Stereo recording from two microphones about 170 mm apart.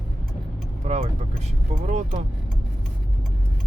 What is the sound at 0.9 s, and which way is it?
Speech, 40° right (ahead or behind).